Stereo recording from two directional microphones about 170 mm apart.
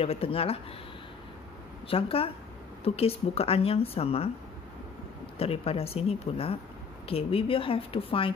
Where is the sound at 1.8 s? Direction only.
35° left (ahead or behind).